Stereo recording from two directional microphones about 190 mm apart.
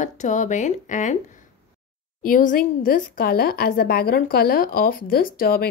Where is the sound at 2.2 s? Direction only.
45° left (ahead or behind).